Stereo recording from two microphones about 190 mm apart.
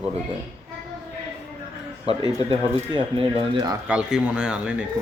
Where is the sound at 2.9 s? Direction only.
25° right (ahead or behind).